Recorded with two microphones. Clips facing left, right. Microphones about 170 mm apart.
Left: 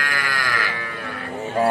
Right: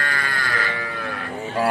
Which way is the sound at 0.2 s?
90° left.